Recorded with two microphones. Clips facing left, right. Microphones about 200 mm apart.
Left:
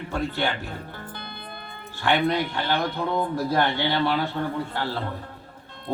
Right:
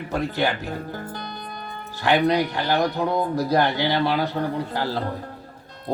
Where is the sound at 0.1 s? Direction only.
40° right (ahead or behind).